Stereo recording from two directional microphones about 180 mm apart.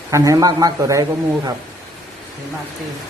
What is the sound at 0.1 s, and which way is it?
Speech, 20° right (ahead or behind).